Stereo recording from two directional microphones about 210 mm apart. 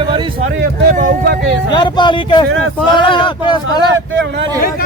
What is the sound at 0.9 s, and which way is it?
Speech, 40° right (ahead or behind).